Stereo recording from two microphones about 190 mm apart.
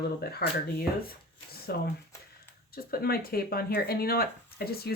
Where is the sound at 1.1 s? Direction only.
55° left (ahead or behind).